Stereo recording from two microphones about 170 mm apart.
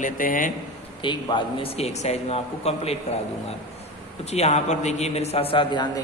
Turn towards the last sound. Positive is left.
turn(degrees=30)  # may be behind; listen again after turning